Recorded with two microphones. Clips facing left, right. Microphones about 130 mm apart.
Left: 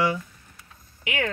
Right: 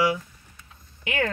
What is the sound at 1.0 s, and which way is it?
Speech, 35° right (ahead or behind).